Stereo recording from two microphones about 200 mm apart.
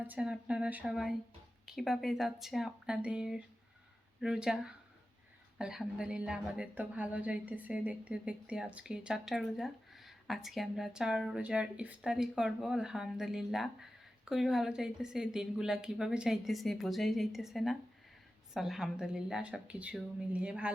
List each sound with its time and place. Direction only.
0.1 s speech: 5° right (ahead or behind)